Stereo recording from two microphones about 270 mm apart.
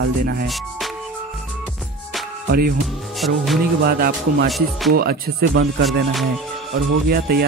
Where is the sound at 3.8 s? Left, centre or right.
Right.